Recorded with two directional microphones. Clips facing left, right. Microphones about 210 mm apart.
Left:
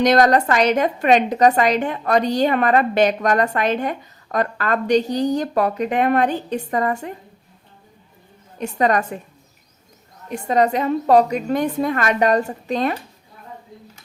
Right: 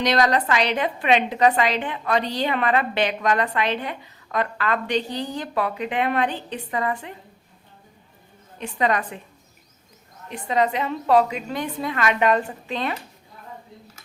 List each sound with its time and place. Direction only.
0.0 s a woman's voice: 45° left (ahead or behind)
8.5 s a woman's voice: 45° left (ahead or behind)
10.2 s a woman's voice: 45° left (ahead or behind)